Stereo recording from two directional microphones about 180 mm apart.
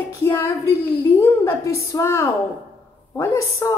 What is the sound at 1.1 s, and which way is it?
A woman's voice, 15° left (ahead or behind).